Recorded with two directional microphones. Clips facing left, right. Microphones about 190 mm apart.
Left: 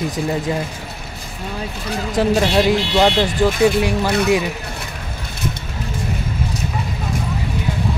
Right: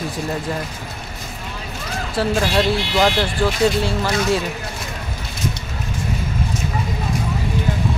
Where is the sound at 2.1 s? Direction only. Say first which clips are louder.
Left 3 dB; 20° left (ahead or behind).